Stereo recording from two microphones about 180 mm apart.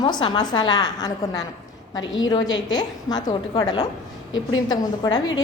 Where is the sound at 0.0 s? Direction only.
25° left (ahead or behind).